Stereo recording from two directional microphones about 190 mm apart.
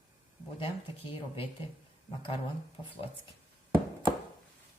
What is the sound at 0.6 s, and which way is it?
Speech, 25° left (ahead or behind).